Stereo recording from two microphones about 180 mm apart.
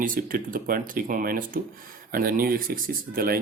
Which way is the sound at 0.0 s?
50° right (ahead or behind).